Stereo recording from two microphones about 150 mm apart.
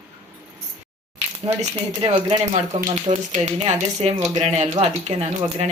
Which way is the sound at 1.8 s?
45° right (ahead or behind).